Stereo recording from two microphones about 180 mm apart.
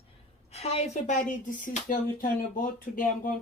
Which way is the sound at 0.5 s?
35° left (ahead or behind).